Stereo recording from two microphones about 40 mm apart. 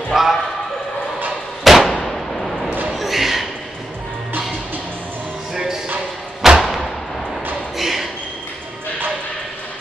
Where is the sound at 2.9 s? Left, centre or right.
Centre.